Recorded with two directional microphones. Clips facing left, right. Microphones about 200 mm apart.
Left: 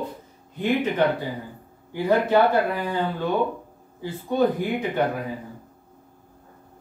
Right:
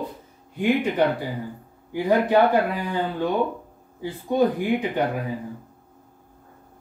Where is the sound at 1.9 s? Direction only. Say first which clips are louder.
Right 1 dB; 15° right (ahead or behind).